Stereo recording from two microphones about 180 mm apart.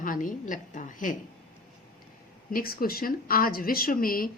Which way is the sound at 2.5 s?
55° left (ahead or behind).